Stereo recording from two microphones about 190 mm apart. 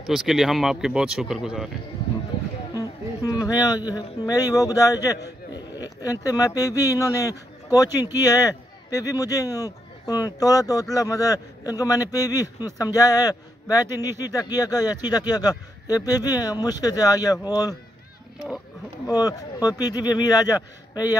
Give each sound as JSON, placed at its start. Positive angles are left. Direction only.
{"t": 0.0, "sound": "speech", "side_deg": 0}
{"t": 2.7, "sound": "speech", "side_deg": 20}
{"t": 19.0, "sound": "speech", "side_deg": 20}